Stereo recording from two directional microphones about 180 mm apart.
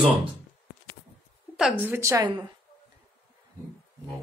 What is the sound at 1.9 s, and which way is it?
Speech, 15° right (ahead or behind).